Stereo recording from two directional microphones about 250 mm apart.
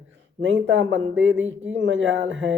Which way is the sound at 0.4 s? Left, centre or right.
Right.